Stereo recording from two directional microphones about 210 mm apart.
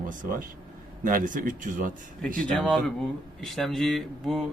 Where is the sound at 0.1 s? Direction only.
40° right (ahead or behind).